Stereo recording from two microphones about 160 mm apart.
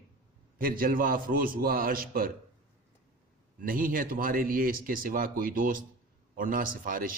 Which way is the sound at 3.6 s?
60° right (ahead or behind).